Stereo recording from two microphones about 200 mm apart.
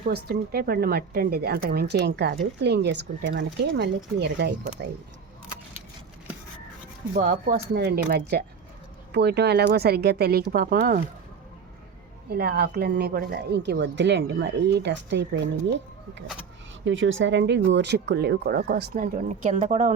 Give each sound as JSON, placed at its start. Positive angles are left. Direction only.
{"t": 0.0, "sound": "speech", "side_deg": -50}
{"t": 7.1, "sound": "speech", "side_deg": -40}
{"t": 12.3, "sound": "speech", "side_deg": -50}
{"t": 16.8, "sound": "speech", "side_deg": -70}